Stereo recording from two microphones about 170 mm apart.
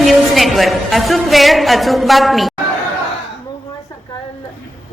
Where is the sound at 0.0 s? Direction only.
Centre (ahead or behind).